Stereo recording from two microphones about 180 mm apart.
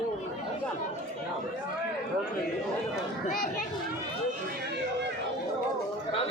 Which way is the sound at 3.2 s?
50° left (ahead or behind).